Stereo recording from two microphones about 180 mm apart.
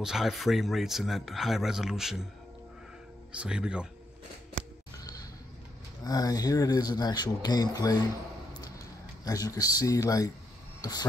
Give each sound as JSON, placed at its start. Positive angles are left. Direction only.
{"t": 0.0, "sound": "speech", "side_deg": 0}
{"t": 3.3, "sound": "speech", "side_deg": -5}
{"t": 6.0, "sound": "speech", "side_deg": 20}
{"t": 10.8, "sound": "a sound", "side_deg": 20}